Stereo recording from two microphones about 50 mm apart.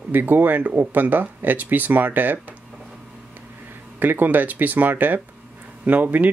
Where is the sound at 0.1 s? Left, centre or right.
Right.